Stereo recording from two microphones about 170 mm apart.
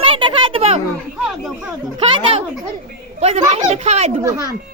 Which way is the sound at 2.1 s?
35° right (ahead or behind).